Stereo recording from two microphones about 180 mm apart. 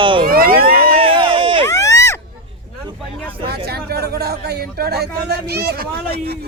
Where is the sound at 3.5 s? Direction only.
60° right (ahead or behind).